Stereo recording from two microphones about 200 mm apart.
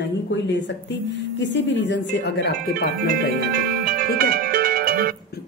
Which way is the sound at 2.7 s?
45° right (ahead or behind).